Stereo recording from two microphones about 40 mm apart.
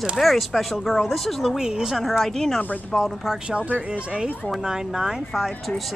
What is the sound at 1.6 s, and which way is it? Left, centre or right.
Speech, centre.